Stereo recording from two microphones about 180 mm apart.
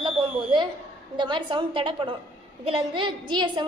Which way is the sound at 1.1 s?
25° right (ahead or behind).